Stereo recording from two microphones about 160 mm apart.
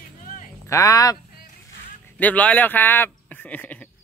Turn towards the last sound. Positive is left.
turn(degrees=10)  # may be behind; listen again after turning